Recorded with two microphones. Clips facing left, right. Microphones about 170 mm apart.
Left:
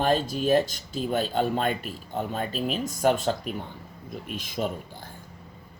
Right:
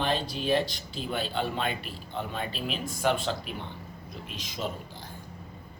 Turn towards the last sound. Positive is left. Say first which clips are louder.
# left 5 dB
turn(degrees=50)  # may be behind; listen again after turning